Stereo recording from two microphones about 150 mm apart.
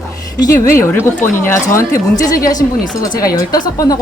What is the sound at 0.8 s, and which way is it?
A woman's voice, 15° left (ahead or behind).